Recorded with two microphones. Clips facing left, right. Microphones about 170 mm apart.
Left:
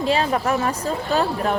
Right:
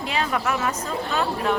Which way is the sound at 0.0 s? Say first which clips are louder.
Left 5 dB; 35° left (ahead or behind).